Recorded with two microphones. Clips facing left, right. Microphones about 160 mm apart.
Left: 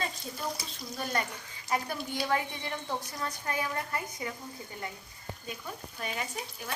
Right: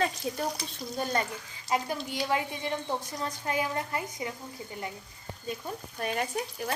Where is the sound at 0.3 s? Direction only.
75° right (ahead or behind).